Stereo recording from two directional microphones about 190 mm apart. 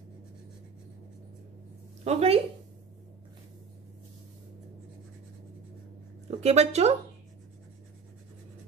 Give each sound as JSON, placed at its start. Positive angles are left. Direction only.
{"t": 2.0, "sound": "speech", "side_deg": -35}
{"t": 6.4, "sound": "speech", "side_deg": -35}